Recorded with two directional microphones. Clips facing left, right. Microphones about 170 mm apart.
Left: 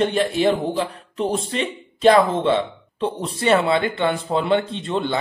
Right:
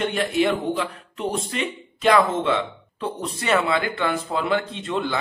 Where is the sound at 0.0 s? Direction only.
30° left (ahead or behind).